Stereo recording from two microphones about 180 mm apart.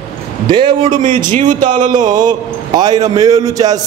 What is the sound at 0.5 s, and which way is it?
Speech, 25° right (ahead or behind).